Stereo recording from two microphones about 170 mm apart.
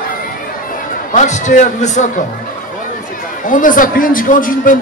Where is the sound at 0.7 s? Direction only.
50° left (ahead or behind).